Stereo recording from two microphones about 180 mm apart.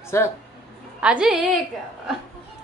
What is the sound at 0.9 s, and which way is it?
Speech, 5° right (ahead or behind).